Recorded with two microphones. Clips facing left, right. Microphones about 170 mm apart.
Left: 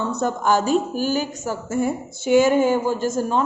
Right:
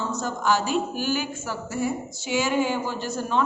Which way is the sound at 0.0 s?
55° left (ahead or behind).